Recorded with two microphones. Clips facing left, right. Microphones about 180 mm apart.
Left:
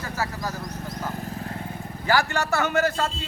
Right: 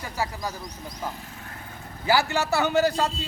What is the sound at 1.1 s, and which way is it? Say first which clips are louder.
Vehicle: left 9 dB; 40° left (ahead or behind).